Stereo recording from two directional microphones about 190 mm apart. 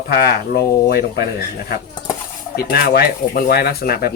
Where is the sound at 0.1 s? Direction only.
55° left (ahead or behind).